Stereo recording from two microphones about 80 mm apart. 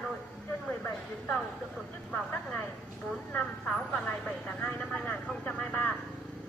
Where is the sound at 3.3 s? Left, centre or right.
Centre.